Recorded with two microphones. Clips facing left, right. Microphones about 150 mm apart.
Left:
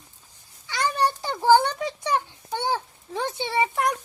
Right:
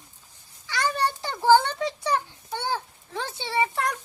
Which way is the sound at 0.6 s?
20° left (ahead or behind).